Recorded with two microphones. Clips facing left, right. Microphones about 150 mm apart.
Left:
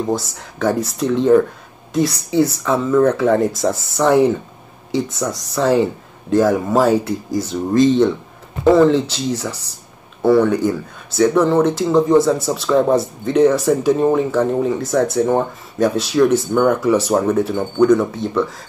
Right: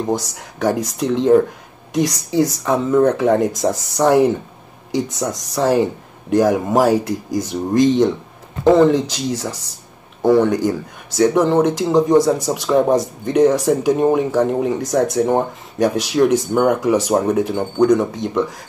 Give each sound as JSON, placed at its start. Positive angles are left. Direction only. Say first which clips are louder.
{"t": 0.0, "sound": "speech", "louder": "even", "side_deg": -15}